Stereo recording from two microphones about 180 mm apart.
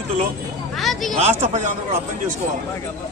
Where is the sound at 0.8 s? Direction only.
Centre (ahead or behind).